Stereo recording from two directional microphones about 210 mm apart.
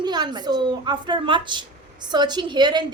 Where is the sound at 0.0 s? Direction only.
20° right (ahead or behind).